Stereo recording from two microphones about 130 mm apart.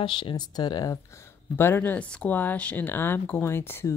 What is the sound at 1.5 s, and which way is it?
Speech, 15° left (ahead or behind).